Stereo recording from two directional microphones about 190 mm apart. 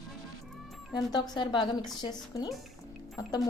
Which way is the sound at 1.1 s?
20° left (ahead or behind).